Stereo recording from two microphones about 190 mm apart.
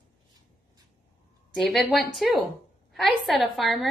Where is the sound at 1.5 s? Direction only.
Centre (ahead or behind).